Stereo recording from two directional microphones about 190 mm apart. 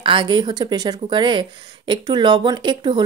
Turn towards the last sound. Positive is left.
turn(degrees=-25)  # may be behind; listen again after turning